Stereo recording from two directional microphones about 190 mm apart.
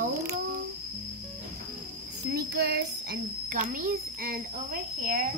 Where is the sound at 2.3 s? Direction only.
60° right (ahead or behind).